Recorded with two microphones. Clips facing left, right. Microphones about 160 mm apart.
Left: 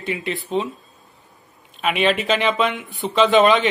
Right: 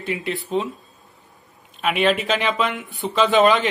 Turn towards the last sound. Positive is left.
turn(degrees=0)  # may be behind; listen again after turning